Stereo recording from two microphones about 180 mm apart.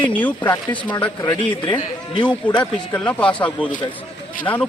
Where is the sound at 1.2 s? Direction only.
20° left (ahead or behind).